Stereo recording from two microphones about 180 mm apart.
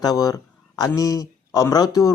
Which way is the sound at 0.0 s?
20° left (ahead or behind).